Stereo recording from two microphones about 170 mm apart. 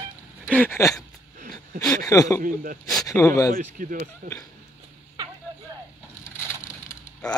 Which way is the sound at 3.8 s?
55° right (ahead or behind).